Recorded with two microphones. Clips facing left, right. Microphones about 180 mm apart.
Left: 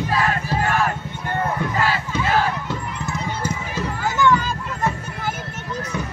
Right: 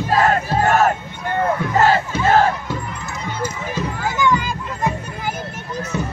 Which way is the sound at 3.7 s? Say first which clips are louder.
Right 1 dB; 10° right (ahead or behind).